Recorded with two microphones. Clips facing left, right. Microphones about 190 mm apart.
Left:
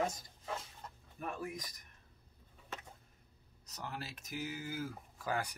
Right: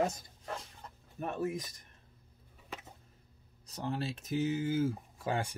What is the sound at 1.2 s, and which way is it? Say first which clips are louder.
Speech: right 7 dB; 25° right (ahead or behind).